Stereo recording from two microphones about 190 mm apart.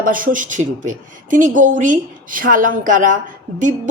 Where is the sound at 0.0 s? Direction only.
45° right (ahead or behind).